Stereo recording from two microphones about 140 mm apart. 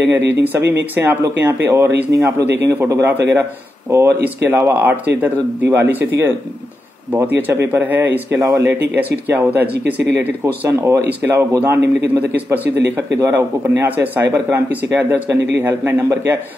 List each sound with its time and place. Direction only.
0.1 s speech: 15° right (ahead or behind)